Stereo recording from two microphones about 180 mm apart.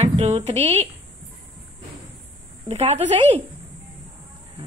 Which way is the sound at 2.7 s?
35° right (ahead or behind).